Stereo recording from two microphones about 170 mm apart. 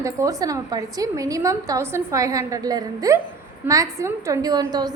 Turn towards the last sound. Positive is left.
turn(degrees=-25)  # may be behind; listen again after turning